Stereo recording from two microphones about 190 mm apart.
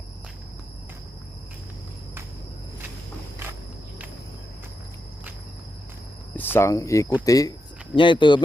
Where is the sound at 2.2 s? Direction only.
15° right (ahead or behind).